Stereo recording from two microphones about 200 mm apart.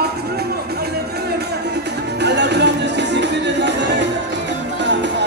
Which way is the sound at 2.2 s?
60° right (ahead or behind).